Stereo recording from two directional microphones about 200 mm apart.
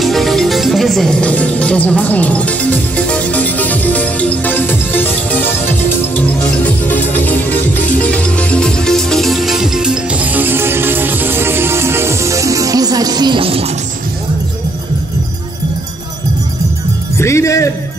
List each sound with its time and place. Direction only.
0.0 s music: centre (ahead or behind); by 13.7 s 30° right (ahead or behind)
17.2 s music: 15° left (ahead or behind)